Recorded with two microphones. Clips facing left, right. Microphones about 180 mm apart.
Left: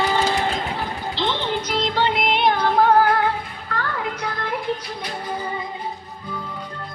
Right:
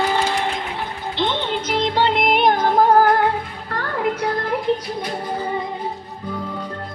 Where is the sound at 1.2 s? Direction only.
20° right (ahead or behind).